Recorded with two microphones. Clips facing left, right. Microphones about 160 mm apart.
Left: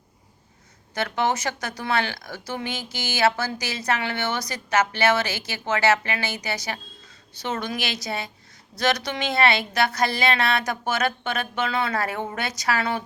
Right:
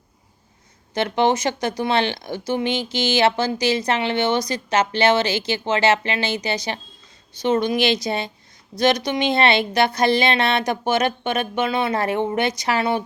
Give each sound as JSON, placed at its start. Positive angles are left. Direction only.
{"t": 0.9, "sound": "a woman's voice", "side_deg": -25}